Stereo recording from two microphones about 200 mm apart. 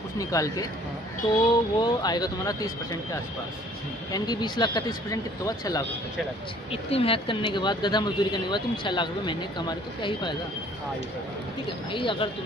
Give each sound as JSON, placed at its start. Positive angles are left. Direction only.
{"t": 0.2, "sound": "speech", "side_deg": 15}
{"t": 6.7, "sound": "speech", "side_deg": 30}
{"t": 11.9, "sound": "speech", "side_deg": 25}